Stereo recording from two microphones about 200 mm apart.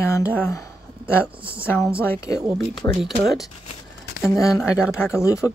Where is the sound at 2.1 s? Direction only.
15° left (ahead or behind).